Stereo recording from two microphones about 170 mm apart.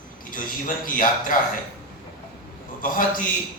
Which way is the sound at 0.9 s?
55° left (ahead or behind).